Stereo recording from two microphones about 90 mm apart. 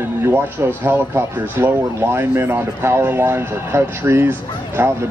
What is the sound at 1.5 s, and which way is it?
Speech, 25° right (ahead or behind).